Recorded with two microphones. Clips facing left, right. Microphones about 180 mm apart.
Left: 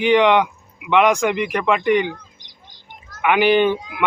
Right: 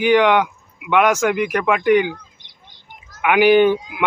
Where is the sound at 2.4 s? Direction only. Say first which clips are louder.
Left 1 dB; 60° right (ahead or behind).